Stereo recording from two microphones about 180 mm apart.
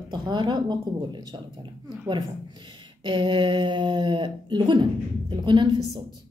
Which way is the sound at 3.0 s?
25° right (ahead or behind).